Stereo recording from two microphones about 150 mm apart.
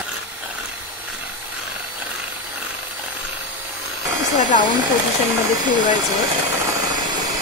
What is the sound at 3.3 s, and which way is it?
Helicopter, 10° right (ahead or behind).